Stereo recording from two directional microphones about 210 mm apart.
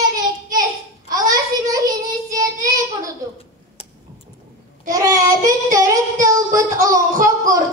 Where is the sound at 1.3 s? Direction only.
15° right (ahead or behind).